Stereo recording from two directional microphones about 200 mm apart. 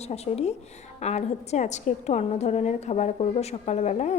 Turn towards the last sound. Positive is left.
turn(degrees=35)  # may be behind; listen again after turning